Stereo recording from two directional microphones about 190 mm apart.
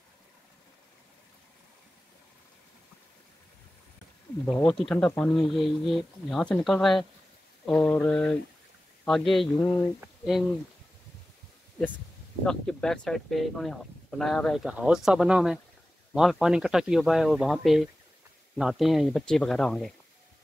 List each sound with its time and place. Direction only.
4.5 s speech: 10° left (ahead or behind)
7.6 s mantra: 10° left (ahead or behind)
9.0 s speech: centre (ahead or behind)
12.4 s speech: 5° left (ahead or behind)